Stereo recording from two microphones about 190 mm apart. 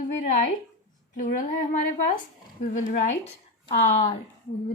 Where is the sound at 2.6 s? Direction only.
40° left (ahead or behind).